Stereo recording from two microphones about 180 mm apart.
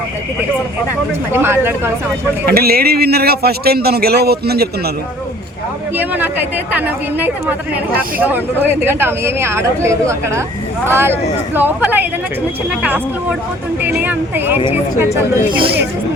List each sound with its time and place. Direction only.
1.3 s a woman's voice: 10° right (ahead or behind)
2.5 s speech: 55° right (ahead or behind)
6.0 s a woman's voice: 10° right (ahead or behind)